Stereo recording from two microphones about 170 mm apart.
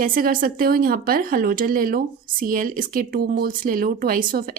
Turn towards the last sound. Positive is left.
turn(degrees=-55)  # may be behind; listen again after turning